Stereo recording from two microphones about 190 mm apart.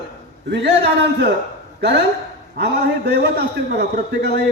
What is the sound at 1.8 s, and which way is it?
Speech, 60° right (ahead or behind).